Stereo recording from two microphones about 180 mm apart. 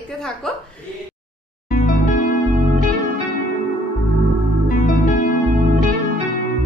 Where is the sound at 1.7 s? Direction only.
50° left (ahead or behind).